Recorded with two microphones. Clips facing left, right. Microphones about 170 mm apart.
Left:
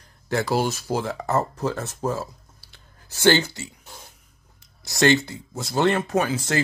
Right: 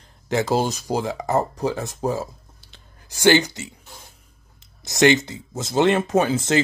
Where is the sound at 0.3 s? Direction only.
20° right (ahead or behind).